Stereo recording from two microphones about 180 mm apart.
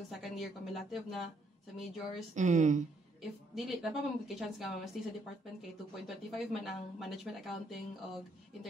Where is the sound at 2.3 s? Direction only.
40° right (ahead or behind).